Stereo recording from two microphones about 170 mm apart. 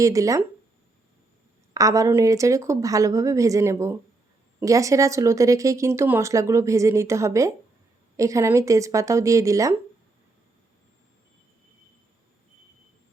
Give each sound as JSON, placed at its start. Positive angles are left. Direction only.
{"t": 0.0, "sound": "speech", "side_deg": -20}
{"t": 1.7, "sound": "speech", "side_deg": -20}